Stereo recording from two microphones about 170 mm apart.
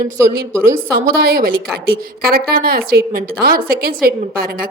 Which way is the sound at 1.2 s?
60° right (ahead or behind).